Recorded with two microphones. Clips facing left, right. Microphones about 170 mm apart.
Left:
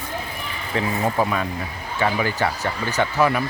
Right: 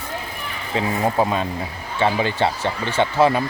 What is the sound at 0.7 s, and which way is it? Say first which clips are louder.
Speech: right 2 dB; 20° right (ahead or behind).